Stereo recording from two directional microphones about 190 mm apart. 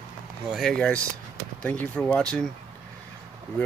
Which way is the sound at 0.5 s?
5° left (ahead or behind).